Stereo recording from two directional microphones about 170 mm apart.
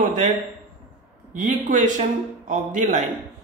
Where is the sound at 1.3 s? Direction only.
50° right (ahead or behind).